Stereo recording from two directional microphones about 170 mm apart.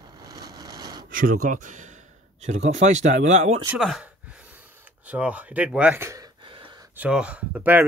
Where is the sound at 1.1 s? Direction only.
55° right (ahead or behind).